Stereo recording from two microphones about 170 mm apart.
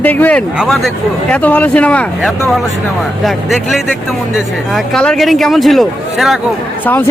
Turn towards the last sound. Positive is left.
turn(degrees=0)  # may be behind; listen again after turning